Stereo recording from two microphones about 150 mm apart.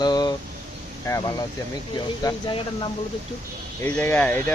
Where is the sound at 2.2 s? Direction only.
25° left (ahead or behind).